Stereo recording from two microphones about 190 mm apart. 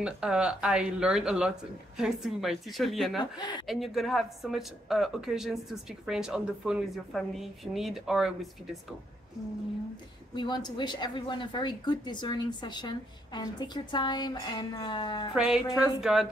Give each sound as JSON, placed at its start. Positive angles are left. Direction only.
{"t": 0.0, "sound": "a woman's voice", "side_deg": -5}
{"t": 3.2, "sound": "a woman's voice", "side_deg": 25}
{"t": 3.6, "sound": "a woman's voice", "side_deg": 0}
{"t": 10.3, "sound": "a woman's voice", "side_deg": 25}
{"t": 15.3, "sound": "a woman's voice", "side_deg": -5}